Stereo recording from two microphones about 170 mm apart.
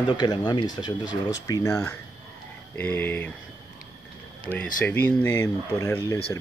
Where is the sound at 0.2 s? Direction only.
25° left (ahead or behind); by 3.3 s 10° left (ahead or behind).